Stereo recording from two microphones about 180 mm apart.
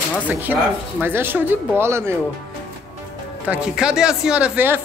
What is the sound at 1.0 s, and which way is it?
Speech, 10° right (ahead or behind).